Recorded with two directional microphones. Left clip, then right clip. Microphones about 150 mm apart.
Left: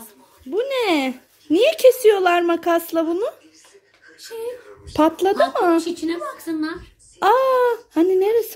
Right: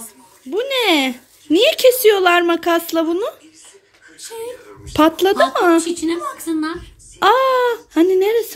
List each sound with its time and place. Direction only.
0.5 s speech: centre (ahead or behind)
4.9 s speech: centre (ahead or behind)
5.9 s a woman's voice: 45° right (ahead or behind)
7.2 s speech: centre (ahead or behind)